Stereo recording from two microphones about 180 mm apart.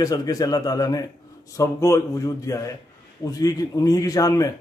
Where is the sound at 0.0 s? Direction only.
20° left (ahead or behind).